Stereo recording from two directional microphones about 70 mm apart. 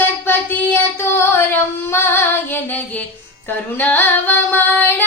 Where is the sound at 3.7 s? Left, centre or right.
Left.